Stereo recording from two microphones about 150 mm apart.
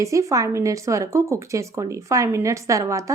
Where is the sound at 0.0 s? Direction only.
20° right (ahead or behind).